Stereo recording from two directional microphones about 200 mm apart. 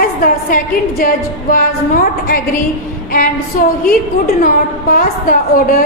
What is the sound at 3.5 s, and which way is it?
A woman's voice, 40° left (ahead or behind).